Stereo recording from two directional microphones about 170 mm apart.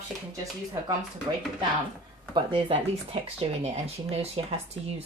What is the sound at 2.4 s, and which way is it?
Speech, 30° right (ahead or behind).